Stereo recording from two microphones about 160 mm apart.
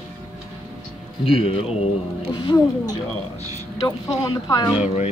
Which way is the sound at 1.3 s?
35° left (ahead or behind).